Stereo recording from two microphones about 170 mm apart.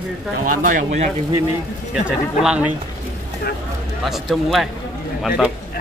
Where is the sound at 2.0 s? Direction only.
5° right (ahead or behind).